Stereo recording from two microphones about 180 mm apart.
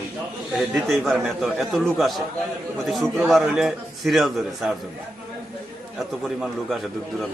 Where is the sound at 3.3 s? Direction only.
Centre (ahead or behind).